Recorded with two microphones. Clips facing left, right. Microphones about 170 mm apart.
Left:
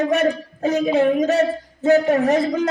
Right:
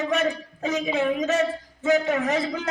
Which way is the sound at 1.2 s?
40° left (ahead or behind).